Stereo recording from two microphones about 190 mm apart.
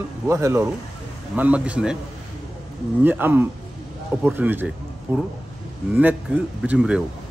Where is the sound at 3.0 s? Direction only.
10° right (ahead or behind).